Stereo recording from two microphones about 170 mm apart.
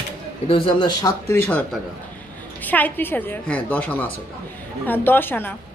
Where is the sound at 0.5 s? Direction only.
30° left (ahead or behind).